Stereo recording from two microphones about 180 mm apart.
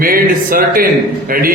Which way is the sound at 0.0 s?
55° right (ahead or behind).